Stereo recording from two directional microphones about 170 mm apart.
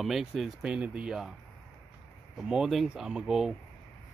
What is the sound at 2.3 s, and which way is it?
Speech, 5° right (ahead or behind).